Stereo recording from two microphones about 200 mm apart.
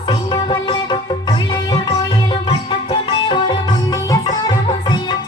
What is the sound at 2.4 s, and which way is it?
Music, 25° left (ahead or behind).